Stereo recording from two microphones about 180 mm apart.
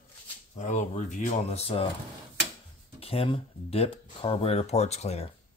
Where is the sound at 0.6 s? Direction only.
40° left (ahead or behind).